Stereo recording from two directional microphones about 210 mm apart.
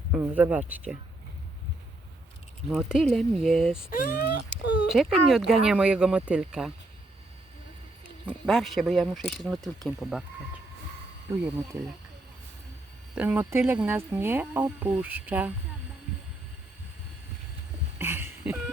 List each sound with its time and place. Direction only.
0.1 s speech: 10° right (ahead or behind)
2.6 s speech: centre (ahead or behind)
3.8 s speech: 45° left (ahead or behind)
4.9 s speech: centre (ahead or behind)
8.3 s speech: centre (ahead or behind)
11.3 s speech: 10° right (ahead or behind)
13.1 s speech: 10° right (ahead or behind)
18.0 s a sound: 10° right (ahead or behind)